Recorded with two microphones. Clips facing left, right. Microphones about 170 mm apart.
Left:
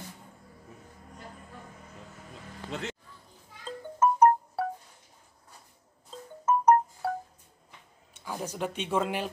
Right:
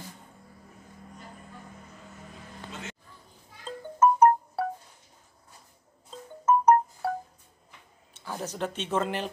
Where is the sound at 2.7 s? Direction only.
70° left (ahead or behind).